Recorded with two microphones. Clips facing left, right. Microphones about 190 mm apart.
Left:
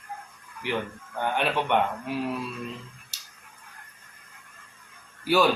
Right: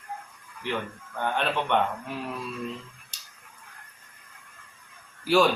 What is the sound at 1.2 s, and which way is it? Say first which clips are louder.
Speech: left 1 dB; 10° left (ahead or behind).